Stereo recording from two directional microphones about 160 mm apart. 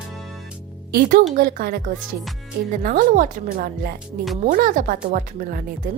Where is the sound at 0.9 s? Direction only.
60° right (ahead or behind).